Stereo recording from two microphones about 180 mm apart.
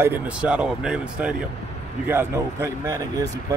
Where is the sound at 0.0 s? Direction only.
10° right (ahead or behind).